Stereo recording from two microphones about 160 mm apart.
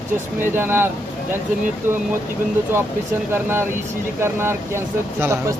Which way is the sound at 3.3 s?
15° right (ahead or behind).